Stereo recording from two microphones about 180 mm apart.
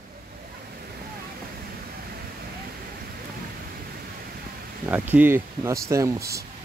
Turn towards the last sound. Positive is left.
turn(degrees=-15)  # may be behind; listen again after turning